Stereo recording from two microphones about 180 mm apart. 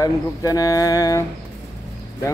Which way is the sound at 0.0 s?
20° left (ahead or behind).